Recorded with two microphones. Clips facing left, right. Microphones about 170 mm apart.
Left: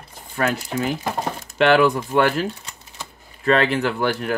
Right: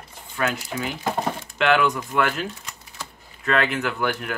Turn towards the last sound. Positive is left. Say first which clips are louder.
# left 4 dB
turn(degrees=35)  # may be behind; listen again after turning